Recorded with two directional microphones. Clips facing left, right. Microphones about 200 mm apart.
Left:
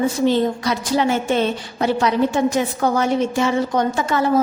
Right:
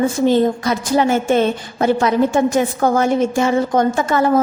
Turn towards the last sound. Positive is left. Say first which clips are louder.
# right 3 dB
turn(degrees=-50)  # may be behind; listen again after turning